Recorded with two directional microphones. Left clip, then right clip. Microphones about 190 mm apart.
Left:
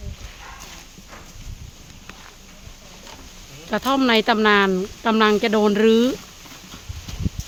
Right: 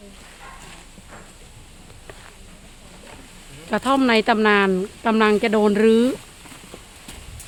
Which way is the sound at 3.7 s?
5° right (ahead or behind).